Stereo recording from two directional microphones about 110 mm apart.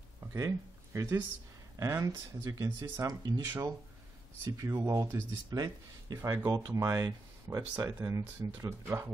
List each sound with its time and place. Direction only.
0.3 s speech: 25° right (ahead or behind)
4.5 s speech: 25° right (ahead or behind)